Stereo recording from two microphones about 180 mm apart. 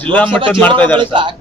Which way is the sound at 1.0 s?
25° right (ahead or behind).